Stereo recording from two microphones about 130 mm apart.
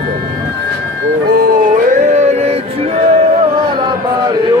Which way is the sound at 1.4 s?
90° right.